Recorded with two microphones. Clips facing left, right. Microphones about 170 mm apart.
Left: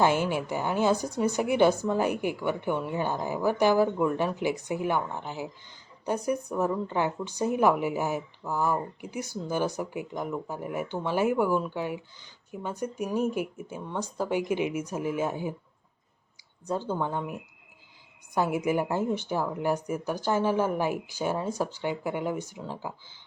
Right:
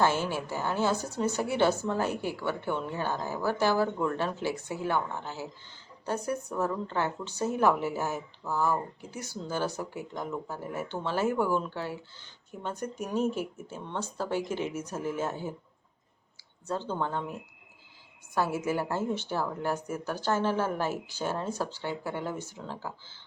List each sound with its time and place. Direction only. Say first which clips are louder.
0.0 s a woman's voice: left 3 dB; 15° left (ahead or behind)
16.6 s a woman's voice: left 2 dB; 10° left (ahead or behind)